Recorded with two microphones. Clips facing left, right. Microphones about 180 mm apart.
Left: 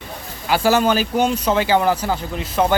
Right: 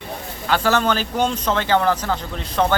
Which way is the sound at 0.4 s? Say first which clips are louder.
Left 3 dB; 10° left (ahead or behind).